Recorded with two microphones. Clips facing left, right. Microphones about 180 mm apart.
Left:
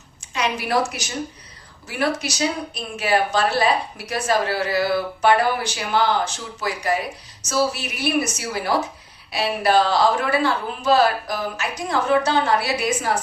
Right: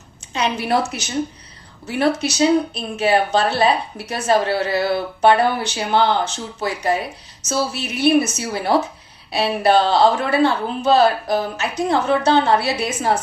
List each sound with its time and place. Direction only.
0.3 s a woman's voice: 25° right (ahead or behind)
1.9 s a woman's voice: 25° right (ahead or behind)